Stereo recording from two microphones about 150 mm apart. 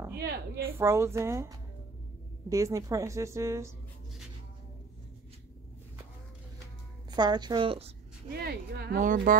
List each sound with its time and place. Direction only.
0.6 s a woman's voice: 15° right (ahead or behind)
7.1 s speech: 30° right (ahead or behind)
8.4 s speech: 90° right; by 9.4 s 65° right (ahead or behind)